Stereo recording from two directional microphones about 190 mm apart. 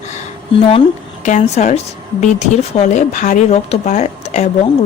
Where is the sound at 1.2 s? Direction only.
35° left (ahead or behind).